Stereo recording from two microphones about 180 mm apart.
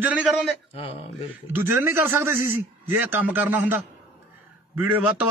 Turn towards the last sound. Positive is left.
turn(degrees=-10)  # may be behind; listen again after turning